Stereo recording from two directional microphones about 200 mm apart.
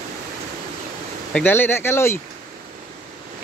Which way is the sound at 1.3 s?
10° left (ahead or behind).